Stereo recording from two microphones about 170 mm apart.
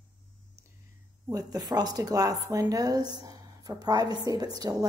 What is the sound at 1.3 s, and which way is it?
A woman's voice, 20° right (ahead or behind).